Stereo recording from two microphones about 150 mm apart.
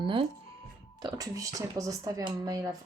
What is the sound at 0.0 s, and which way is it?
Music, 35° right (ahead or behind).